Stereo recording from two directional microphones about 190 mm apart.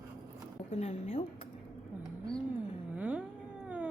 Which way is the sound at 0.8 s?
35° left (ahead or behind).